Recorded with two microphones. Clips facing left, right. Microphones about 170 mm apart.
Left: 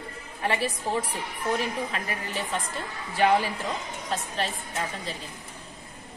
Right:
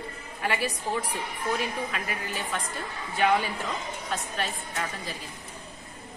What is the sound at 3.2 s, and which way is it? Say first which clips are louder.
A woman's voice: left 2 dB; 30° left (ahead or behind).